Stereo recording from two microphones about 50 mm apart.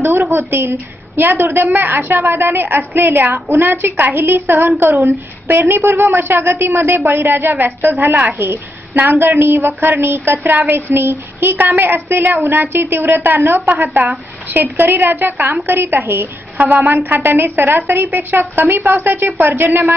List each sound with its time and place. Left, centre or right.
0.0 s a woman's voice: right
16.5 s a woman's voice: right